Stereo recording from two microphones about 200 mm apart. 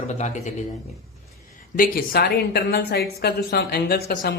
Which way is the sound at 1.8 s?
50° left (ahead or behind).